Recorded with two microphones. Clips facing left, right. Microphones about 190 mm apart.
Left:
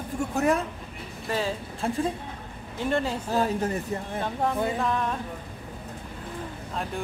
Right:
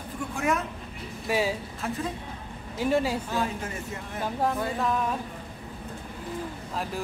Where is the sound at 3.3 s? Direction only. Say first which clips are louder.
Left 4 dB; 40° left (ahead or behind).